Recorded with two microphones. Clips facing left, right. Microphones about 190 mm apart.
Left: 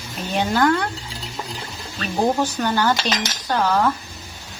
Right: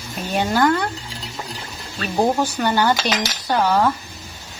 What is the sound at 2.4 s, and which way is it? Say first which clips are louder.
Speech: right 1 dB; 10° right (ahead or behind).